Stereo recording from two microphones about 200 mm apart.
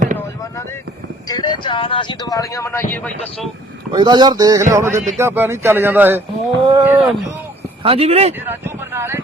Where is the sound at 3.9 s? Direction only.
20° right (ahead or behind).